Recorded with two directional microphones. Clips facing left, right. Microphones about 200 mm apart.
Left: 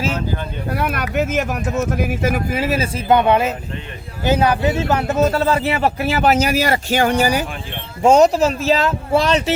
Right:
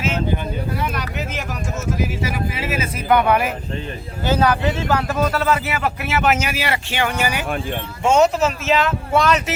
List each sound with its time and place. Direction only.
0.7 s a man's voice: 60° left (ahead or behind); by 9.4 s 30° left (ahead or behind)